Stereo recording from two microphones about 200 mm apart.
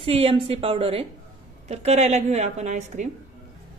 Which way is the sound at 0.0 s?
30° right (ahead or behind).